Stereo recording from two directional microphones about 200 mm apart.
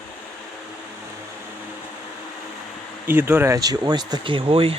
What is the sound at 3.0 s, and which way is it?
Speech, 10° right (ahead or behind).